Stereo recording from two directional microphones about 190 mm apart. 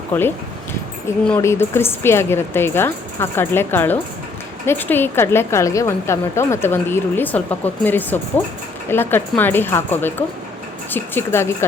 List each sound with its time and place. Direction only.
0.1 s a woman's voice: 10° left (ahead or behind)